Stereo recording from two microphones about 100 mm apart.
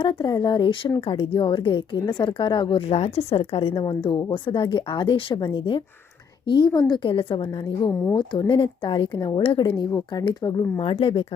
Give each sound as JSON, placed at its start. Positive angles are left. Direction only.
{"t": 0.0, "sound": "a woman's voice", "side_deg": 45}
{"t": 1.0, "sound": "a woman's voice", "side_deg": 65}
{"t": 3.8, "sound": "a woman's voice", "side_deg": 55}
{"t": 10.8, "sound": "speech", "side_deg": 70}